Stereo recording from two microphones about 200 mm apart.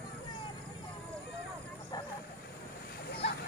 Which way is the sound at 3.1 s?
55° left (ahead or behind).